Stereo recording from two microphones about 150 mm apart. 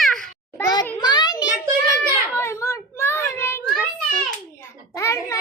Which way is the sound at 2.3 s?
15° left (ahead or behind).